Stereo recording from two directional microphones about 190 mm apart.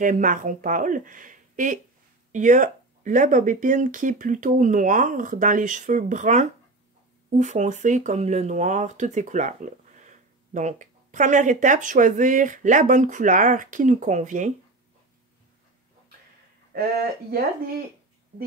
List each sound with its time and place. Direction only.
0.0 s speech: 45° right (ahead or behind)